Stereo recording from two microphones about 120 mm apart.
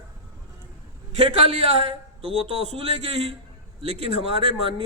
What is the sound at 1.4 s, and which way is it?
A man's voice, 50° right (ahead or behind).